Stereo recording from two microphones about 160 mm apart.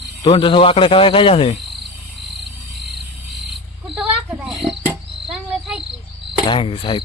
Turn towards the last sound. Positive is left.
turn(degrees=30)  # may be behind; listen again after turning